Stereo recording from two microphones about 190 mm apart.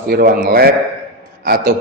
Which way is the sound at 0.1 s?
50° right (ahead or behind).